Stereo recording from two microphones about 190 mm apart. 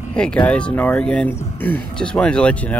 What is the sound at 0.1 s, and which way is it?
Speech, 5° left (ahead or behind).